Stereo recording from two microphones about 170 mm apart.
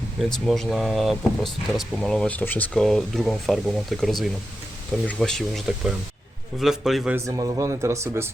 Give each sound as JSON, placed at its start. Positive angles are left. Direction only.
{"t": 0.2, "sound": "speech", "side_deg": 0}
{"t": 7.3, "sound": "speech", "side_deg": -20}